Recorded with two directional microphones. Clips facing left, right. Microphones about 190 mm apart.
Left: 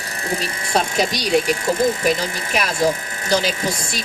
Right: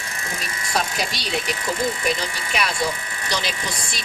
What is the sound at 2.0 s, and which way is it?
Speech, 45° left (ahead or behind).